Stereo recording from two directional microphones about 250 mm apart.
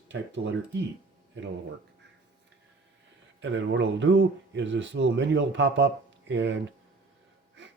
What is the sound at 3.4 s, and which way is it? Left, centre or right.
Speech, right.